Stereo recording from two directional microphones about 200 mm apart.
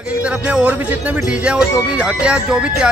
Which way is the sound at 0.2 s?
5° right (ahead or behind).